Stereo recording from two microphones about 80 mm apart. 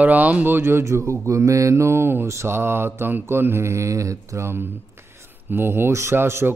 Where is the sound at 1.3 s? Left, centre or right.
Right.